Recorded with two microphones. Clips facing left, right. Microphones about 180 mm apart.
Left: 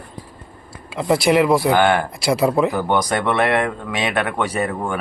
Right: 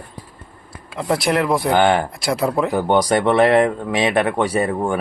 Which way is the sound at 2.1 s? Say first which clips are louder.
Left 2 dB; centre (ahead or behind).